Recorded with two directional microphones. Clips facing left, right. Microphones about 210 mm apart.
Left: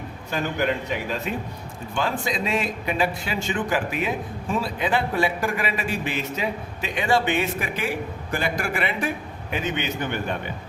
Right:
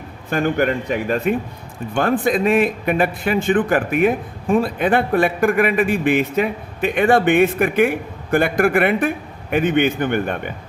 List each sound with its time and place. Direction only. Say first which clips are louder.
0.3 s speech: right 7 dB; 55° right (ahead or behind)